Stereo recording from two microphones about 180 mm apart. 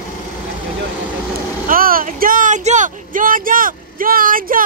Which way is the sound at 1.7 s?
50° right (ahead or behind).